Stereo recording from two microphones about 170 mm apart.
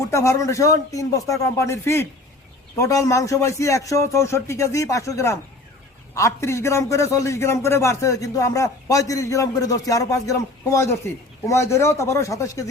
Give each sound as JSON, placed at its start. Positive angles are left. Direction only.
{"t": 0.1, "sound": "a man's voice", "side_deg": 15}